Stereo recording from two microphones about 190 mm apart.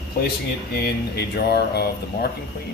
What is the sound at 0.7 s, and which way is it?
Speech, 55° left (ahead or behind).